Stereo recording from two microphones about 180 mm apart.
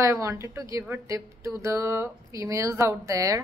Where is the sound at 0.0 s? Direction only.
15° right (ahead or behind).